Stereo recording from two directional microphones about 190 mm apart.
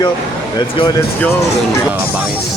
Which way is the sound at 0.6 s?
20° left (ahead or behind).